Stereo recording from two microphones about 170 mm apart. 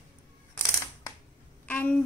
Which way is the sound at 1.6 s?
10° left (ahead or behind).